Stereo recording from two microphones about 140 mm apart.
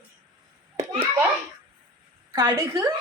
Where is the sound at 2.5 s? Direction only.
20° right (ahead or behind).